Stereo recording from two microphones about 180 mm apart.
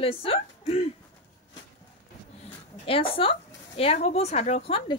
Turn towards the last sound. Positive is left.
turn(degrees=30)  # may be behind; listen again after turning